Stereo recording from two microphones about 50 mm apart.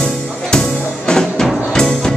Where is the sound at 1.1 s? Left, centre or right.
Centre.